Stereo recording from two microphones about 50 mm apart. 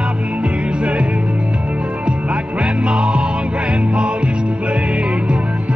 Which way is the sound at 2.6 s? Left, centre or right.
Centre.